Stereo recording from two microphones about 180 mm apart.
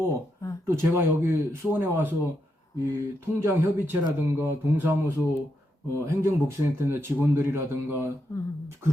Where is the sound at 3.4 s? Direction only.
15° right (ahead or behind).